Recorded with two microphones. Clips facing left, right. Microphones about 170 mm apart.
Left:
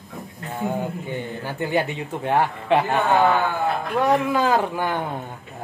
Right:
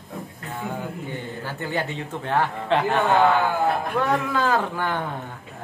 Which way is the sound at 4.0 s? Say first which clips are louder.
Left 7 dB; 15° left (ahead or behind).